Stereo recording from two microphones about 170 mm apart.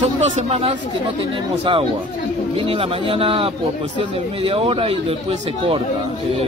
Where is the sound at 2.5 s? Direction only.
35° right (ahead or behind).